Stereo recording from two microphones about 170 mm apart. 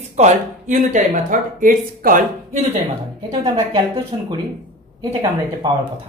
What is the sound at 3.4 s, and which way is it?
Speech, 30° right (ahead or behind).